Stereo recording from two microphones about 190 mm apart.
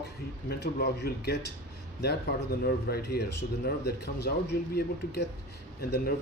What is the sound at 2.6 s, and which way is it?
Speech, 55° left (ahead or behind).